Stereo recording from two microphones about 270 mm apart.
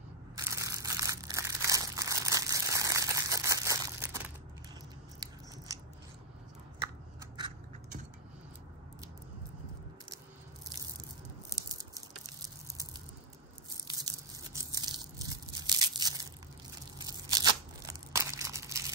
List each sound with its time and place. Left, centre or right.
0.4 s crumpling: centre
7.3 s scissors: centre
13.8 s a sound: centre
17.3 s tearing: centre